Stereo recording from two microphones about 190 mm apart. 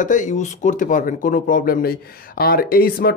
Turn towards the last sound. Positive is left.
turn(degrees=50)  # may be behind; listen again after turning